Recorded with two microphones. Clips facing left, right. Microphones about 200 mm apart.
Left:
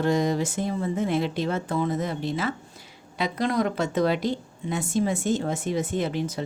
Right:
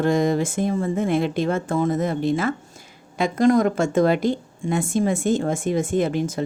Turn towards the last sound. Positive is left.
turn(degrees=-50)  # may be behind; listen again after turning